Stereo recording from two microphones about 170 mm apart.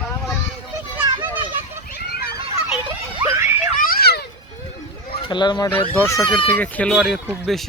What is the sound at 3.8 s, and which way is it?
Children playing, 65° left (ahead or behind).